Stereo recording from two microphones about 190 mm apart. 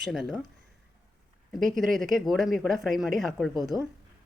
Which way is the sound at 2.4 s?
Centre (ahead or behind).